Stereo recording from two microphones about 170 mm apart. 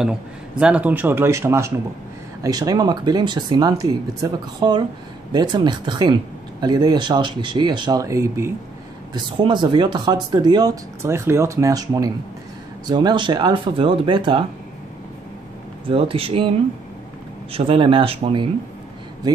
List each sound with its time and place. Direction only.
0.6 s speech: 5° right (ahead or behind)
9.1 s speech: 25° right (ahead or behind)
15.9 s speech: 35° right (ahead or behind)
17.5 s speech: 30° right (ahead or behind)